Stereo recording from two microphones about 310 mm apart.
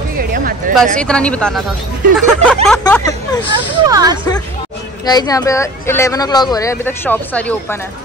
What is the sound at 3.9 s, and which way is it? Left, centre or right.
Speech, centre.